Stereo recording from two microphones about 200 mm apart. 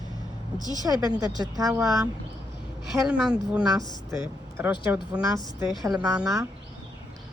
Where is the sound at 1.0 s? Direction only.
20° right (ahead or behind).